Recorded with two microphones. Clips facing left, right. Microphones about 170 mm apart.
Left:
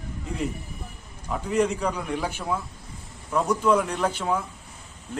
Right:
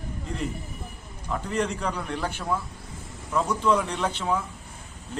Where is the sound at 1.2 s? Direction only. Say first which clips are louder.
Left 4 dB; 10° left (ahead or behind).